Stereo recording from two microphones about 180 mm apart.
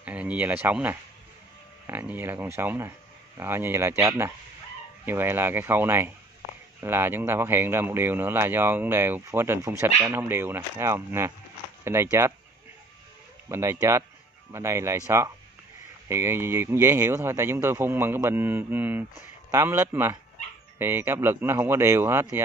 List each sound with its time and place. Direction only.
0.0 s a man's voice: 5° right (ahead or behind)
13.5 s a man's voice: 15° right (ahead or behind)